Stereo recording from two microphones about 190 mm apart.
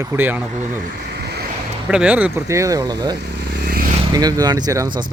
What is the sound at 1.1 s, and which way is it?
Vehicle, 60° right (ahead or behind).